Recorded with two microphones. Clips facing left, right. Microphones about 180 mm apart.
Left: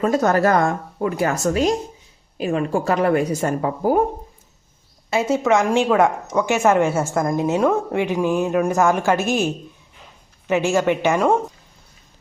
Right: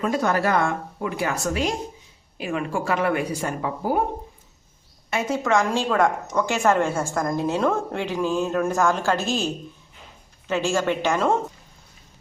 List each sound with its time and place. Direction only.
0.0 s a woman's voice: 45° left (ahead or behind)
5.1 s a woman's voice: 25° left (ahead or behind)
10.5 s a woman's voice: 20° left (ahead or behind)